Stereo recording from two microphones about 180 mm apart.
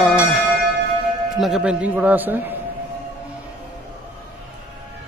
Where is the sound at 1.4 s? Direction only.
5° right (ahead or behind).